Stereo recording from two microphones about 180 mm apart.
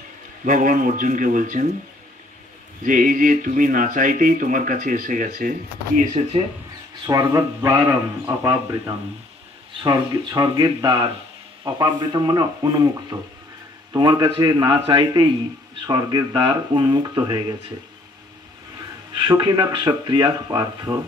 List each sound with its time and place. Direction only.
0.5 s speech: 45° right (ahead or behind)
2.8 s speech: 45° right (ahead or behind)
5.9 s speech: 40° right (ahead or behind)
7.1 s speech: 20° right (ahead or behind)
19.1 s speech: 25° right (ahead or behind)